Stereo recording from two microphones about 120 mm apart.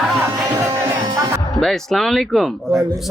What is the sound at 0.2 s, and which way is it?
Music, 20° right (ahead or behind).